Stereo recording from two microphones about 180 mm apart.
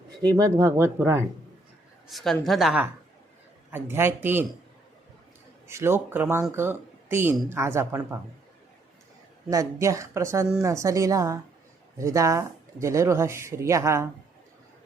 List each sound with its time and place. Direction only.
0.3 s speech: 20° right (ahead or behind)
2.0 s a woman's voice: centre (ahead or behind)
3.7 s speech: 10° right (ahead or behind)
5.6 s speech: 15° right (ahead or behind)
9.5 s speech: 20° right (ahead or behind)